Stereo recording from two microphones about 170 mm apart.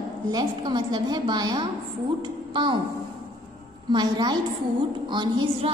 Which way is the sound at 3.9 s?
25° right (ahead or behind).